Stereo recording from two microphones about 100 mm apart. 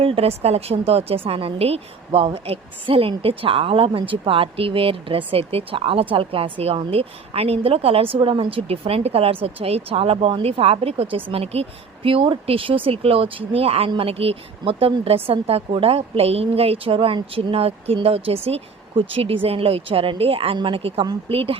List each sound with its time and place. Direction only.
0.0 s a woman's voice: 75° right (ahead or behind)
12.0 s a woman's voice: 65° right (ahead or behind); by 13.9 s 80° right
13.9 s a woman's voice: 70° right (ahead or behind)